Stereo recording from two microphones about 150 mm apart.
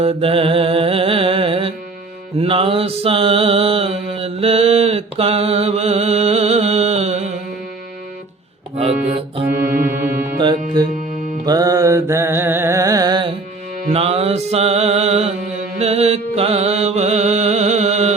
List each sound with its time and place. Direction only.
0.0 s music: 40° right (ahead or behind)
2.4 s mantra: 40° right (ahead or behind)
8.7 s music: 45° right (ahead or behind)
9.6 s music: 70° right (ahead or behind)
10.3 s music: 30° right (ahead or behind)
13.8 s mantra: 40° right (ahead or behind)
15.8 s music: 45° right (ahead or behind)